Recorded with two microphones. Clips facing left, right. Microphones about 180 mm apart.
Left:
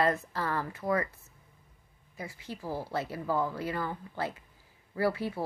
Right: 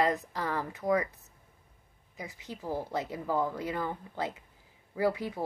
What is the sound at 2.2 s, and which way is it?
A woman's voice, 20° right (ahead or behind).